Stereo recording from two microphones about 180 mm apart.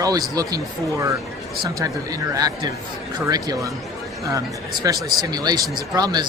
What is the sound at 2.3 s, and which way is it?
Speech, 20° right (ahead or behind).